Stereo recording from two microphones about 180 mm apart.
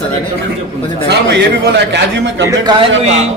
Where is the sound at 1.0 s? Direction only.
65° right (ahead or behind); by 2.5 s 80° right.